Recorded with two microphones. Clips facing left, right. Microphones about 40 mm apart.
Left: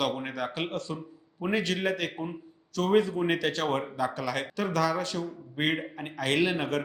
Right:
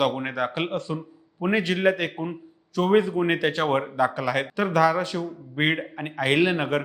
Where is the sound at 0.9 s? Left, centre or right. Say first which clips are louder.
Right 6 dB; right.